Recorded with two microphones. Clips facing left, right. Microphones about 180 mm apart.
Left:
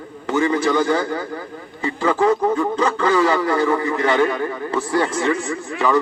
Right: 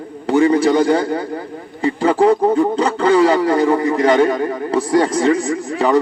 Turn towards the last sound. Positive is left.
turn(degrees=-35)  # may be behind; listen again after turning